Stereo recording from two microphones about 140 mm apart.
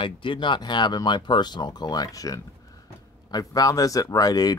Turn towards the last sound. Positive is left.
turn(degrees=25)  # may be behind; listen again after turning